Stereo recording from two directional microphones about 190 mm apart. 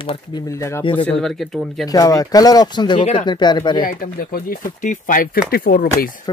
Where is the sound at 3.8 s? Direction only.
50° left (ahead or behind).